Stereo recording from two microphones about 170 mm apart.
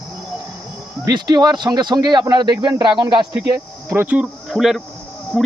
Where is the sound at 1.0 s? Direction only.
25° right (ahead or behind).